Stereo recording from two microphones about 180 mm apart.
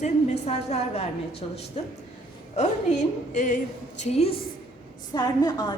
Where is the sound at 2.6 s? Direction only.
40° left (ahead or behind).